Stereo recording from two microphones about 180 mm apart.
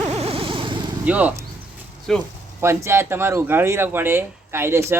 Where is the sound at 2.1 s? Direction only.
5° left (ahead or behind).